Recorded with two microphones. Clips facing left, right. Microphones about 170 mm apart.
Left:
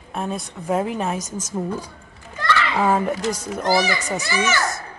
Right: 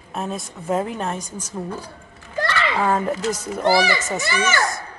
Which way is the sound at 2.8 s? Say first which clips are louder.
Even; 10° left (ahead or behind).